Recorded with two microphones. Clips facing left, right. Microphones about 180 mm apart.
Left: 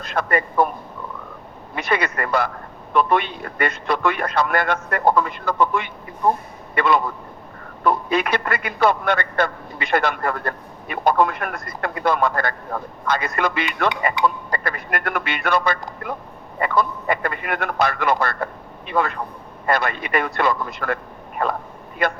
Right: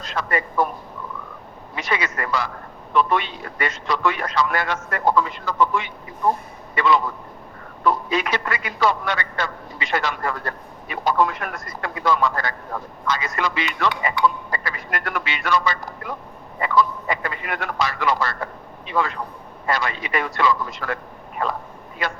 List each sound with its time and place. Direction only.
0.0 s a man's voice: 55° left (ahead or behind)
1.7 s a man's voice: 55° left (ahead or behind)